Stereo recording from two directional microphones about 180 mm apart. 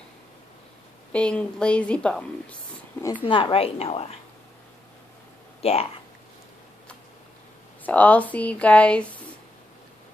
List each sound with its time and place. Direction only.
1.1 s a woman's voice: 5° left (ahead or behind)
3.3 s a woman's voice: 30° left (ahead or behind)
5.6 s speech: 35° left (ahead or behind)
7.8 s speech: 10° left (ahead or behind)